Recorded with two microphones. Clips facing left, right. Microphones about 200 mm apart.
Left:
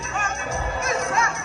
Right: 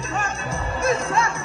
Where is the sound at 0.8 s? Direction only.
30° right (ahead or behind).